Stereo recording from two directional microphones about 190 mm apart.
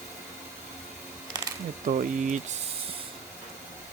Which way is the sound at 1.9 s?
45° right (ahead or behind).